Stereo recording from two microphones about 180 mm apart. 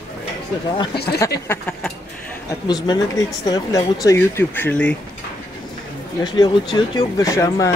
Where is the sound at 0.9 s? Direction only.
65° left (ahead or behind).